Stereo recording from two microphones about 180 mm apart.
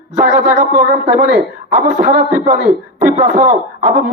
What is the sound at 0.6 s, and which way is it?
A man's voice, 55° right (ahead or behind).